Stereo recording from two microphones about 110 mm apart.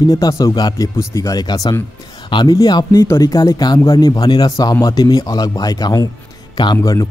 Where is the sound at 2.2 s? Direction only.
45° left (ahead or behind).